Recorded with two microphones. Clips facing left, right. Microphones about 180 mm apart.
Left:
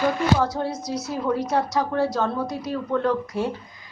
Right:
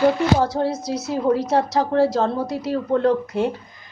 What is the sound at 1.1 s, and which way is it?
A woman's voice, 30° right (ahead or behind).